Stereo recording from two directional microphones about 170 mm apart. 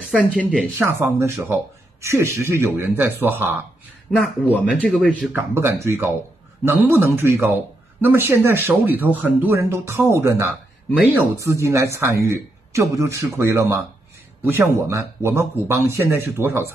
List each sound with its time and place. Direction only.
0.1 s speech: 5° left (ahead or behind)
0.7 s speech: 15° right (ahead or behind)
4.6 s speech: 5° left (ahead or behind)
5.3 s speech: 15° right (ahead or behind)